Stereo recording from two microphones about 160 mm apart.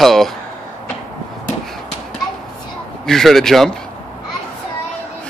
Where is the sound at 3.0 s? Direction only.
Centre (ahead or behind).